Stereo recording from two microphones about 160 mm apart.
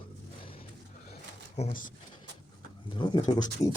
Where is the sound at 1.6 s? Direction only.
45° left (ahead or behind).